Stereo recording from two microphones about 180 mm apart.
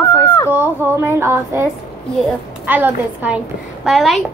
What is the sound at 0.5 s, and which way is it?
A woman's voice, 10° right (ahead or behind).